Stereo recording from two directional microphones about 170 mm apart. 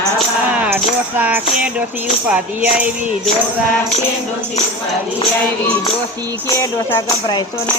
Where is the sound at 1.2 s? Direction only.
10° right (ahead or behind).